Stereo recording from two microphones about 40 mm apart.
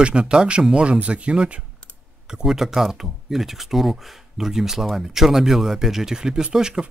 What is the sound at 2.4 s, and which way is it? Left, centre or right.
Speech, centre.